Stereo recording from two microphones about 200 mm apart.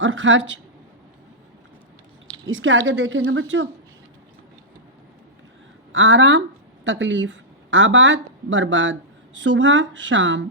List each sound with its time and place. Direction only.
0.0 s a woman's voice: 75° right (ahead or behind)
2.5 s a woman's voice: 75° right (ahead or behind)
5.9 s a woman's voice: 70° right (ahead or behind)